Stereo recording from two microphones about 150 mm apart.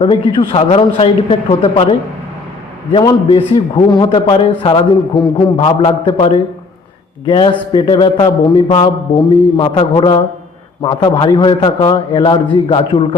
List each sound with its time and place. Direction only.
0.0 s a man's voice: 35° left (ahead or behind)
3.2 s a man's voice: 40° left (ahead or behind)